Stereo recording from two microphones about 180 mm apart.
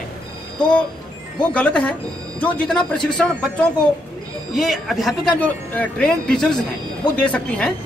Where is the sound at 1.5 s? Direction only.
5° left (ahead or behind).